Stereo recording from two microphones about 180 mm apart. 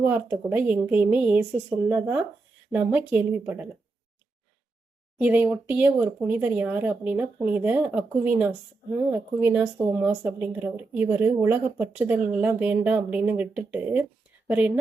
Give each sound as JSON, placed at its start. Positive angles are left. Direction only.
{"t": 0.0, "sound": "speech", "side_deg": -10}
{"t": 5.2, "sound": "speech", "side_deg": -10}